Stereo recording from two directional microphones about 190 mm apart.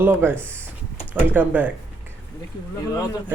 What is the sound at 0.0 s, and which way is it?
Speech, 10° right (ahead or behind).